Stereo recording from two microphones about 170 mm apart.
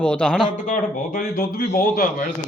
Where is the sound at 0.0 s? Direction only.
5° left (ahead or behind).